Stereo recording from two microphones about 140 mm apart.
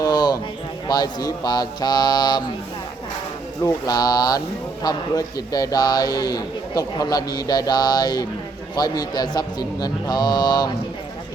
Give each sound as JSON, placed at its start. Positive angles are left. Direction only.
{"t": 0.0, "sound": "a sound", "side_deg": 30}
{"t": 0.9, "sound": "a man's voice", "side_deg": 30}
{"t": 3.6, "sound": "a man's voice", "side_deg": 25}